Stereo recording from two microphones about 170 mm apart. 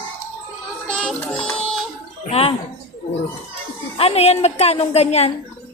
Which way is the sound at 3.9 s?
35° left (ahead or behind).